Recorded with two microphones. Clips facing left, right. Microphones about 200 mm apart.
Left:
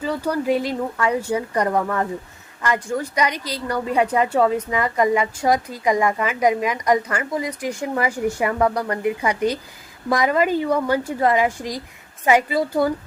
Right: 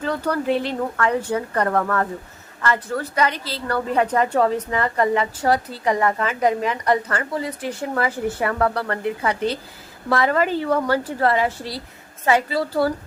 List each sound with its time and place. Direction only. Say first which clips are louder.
0.0 s a woman's voice: even; 10° left (ahead or behind)